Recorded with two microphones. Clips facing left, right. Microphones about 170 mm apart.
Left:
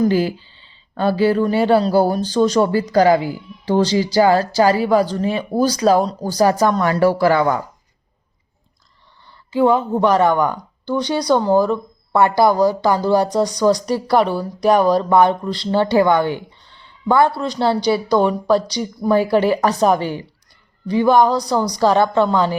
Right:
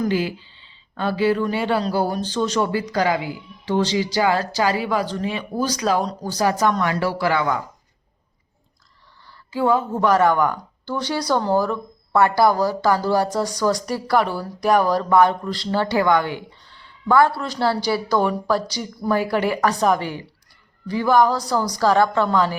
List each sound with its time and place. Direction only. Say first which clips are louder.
0.0 s speech: left 5 dB; 40° left (ahead or behind)
9.2 s speech: left 5 dB; 20° left (ahead or behind)